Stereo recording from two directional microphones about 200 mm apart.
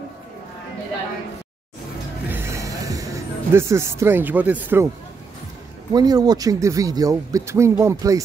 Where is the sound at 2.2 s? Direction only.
10° right (ahead or behind).